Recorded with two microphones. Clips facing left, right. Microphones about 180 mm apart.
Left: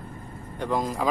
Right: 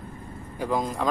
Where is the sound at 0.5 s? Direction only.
Centre (ahead or behind).